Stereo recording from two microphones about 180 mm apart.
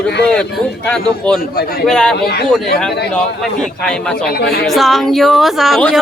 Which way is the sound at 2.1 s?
60° left (ahead or behind).